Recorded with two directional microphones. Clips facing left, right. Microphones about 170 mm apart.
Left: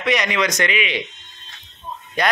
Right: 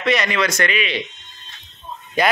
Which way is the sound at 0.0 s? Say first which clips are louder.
Right 1 dB; 15° left (ahead or behind).